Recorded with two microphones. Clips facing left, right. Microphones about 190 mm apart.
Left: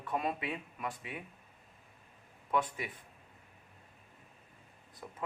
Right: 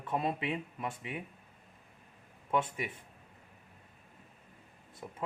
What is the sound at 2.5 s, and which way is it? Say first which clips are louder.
Speech: right 1 dB; 25° right (ahead or behind).